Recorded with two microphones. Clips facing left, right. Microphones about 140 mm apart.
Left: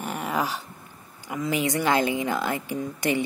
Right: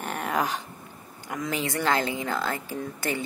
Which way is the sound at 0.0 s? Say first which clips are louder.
Even; 5° left (ahead or behind).